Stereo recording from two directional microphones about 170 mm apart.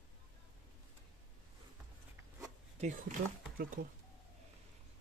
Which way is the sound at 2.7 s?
45° right (ahead or behind).